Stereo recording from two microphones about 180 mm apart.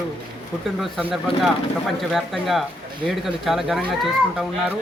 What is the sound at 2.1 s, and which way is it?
Speech, centre (ahead or behind).